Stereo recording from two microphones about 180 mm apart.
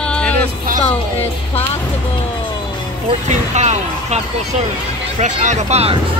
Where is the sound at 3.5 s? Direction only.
40° right (ahead or behind).